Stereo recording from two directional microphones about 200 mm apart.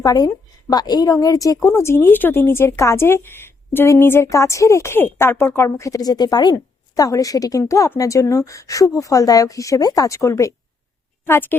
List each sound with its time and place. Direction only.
0.0 s a woman's voice: 20° left (ahead or behind)